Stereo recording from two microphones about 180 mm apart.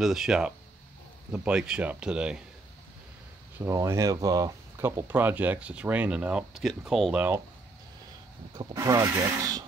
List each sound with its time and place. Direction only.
0.0 s speech: 5° right (ahead or behind)
3.5 s speech: 15° right (ahead or behind)
8.5 s speech: 20° right (ahead or behind)